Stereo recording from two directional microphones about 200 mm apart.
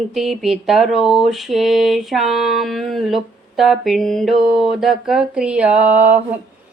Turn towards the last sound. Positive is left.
turn(degrees=-10)  # may be behind; listen again after turning